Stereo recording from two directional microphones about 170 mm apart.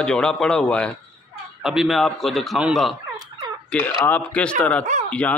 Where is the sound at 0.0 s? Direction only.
5° left (ahead or behind).